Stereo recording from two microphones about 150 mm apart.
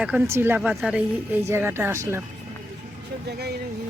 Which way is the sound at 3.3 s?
90° right.